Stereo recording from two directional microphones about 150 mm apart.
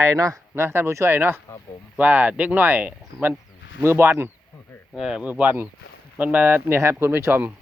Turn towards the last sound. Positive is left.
turn(degrees=-15)  # may be behind; listen again after turning